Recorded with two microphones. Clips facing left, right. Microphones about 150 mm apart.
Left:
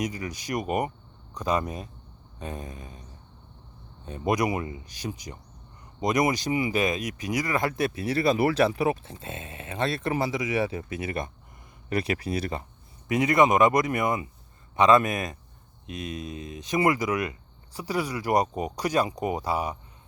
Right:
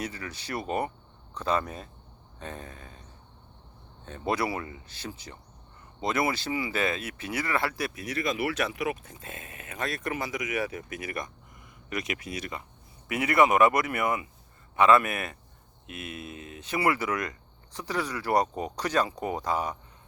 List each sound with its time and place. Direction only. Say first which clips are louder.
0.0 s speech: left 5 dB; 15° left (ahead or behind)
7.7 s speech: left 7 dB; 25° left (ahead or behind)
13.1 s speech: left 2 dB; 20° left (ahead or behind)